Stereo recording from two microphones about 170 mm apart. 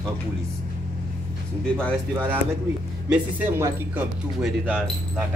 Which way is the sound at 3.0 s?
10° right (ahead or behind).